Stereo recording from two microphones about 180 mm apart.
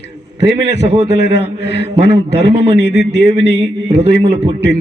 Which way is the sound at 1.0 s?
70° left (ahead or behind).